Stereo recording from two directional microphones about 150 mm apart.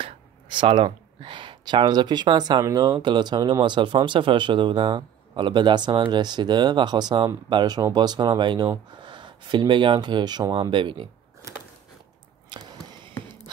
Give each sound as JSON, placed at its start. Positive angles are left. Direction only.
{"t": 0.0, "sound": "speech", "side_deg": -35}
{"t": 12.4, "sound": "arrow", "side_deg": -30}